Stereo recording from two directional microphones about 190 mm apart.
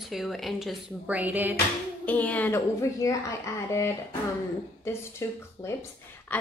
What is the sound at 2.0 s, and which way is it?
A woman's voice, 10° left (ahead or behind).